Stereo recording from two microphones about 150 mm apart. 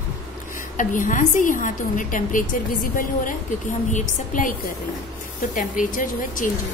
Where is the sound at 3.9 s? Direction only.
60° left (ahead or behind).